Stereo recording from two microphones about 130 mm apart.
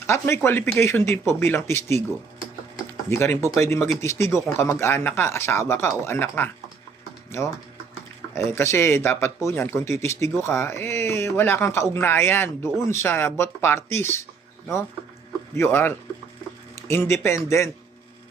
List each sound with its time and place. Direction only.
0.1 s speech: 20° left (ahead or behind)
3.1 s speech: 20° left (ahead or behind)
15.5 s a man's voice: 20° left (ahead or behind)